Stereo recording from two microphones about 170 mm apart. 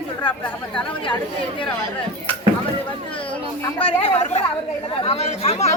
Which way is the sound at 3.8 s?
35° left (ahead or behind).